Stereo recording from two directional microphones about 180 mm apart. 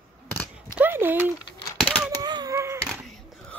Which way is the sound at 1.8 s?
Centre (ahead or behind).